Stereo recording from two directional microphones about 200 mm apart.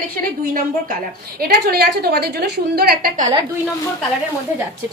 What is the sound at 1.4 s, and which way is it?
A woman's voice, 50° right (ahead or behind).